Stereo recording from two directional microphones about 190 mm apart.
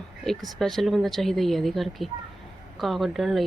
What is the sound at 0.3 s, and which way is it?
A woman's voice, centre (ahead or behind).